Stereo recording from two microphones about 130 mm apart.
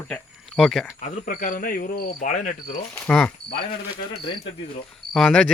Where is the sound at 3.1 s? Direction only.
10° left (ahead or behind).